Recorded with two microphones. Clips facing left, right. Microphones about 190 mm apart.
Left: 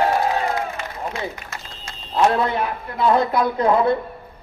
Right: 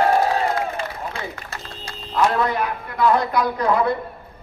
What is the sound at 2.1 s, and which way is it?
A man's voice, 25° left (ahead or behind).